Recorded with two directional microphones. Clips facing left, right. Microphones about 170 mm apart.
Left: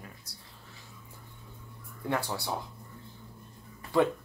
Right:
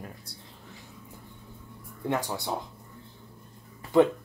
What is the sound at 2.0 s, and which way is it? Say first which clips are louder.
Speech: right 2 dB; 15° right (ahead or behind).